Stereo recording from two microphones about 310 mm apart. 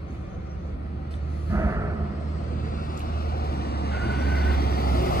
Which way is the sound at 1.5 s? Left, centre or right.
Centre.